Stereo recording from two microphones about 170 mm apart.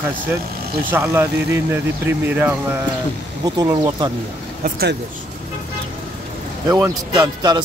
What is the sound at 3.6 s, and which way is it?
Speech, 25° right (ahead or behind).